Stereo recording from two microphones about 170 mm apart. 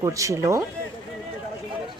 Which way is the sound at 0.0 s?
20° right (ahead or behind).